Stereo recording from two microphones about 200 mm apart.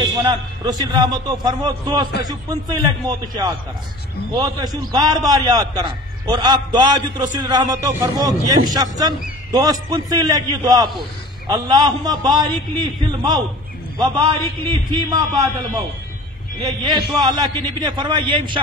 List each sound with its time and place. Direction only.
0.0 s a man's voice: 20° right (ahead or behind)
4.7 s a man's voice: 20° right (ahead or behind)